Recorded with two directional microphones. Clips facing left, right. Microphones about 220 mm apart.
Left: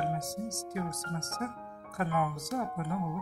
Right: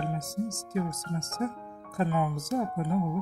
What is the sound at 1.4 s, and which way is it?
Speech, 25° right (ahead or behind).